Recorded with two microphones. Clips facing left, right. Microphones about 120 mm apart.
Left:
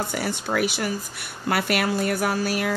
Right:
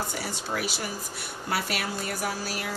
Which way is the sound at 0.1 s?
65° left (ahead or behind).